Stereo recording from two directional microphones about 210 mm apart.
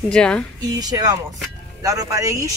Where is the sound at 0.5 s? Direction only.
20° right (ahead or behind).